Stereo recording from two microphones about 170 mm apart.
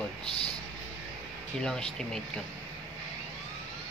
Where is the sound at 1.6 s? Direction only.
5° left (ahead or behind).